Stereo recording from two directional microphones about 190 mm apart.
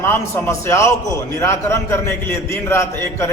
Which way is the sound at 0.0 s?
15° left (ahead or behind).